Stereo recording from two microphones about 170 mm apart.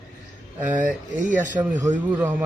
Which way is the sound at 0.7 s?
50° right (ahead or behind).